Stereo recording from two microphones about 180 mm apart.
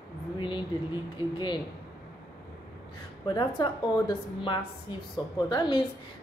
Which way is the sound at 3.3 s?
25° left (ahead or behind).